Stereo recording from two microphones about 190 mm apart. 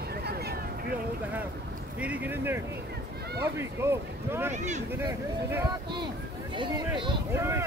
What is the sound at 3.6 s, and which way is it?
Speech, 15° right (ahead or behind).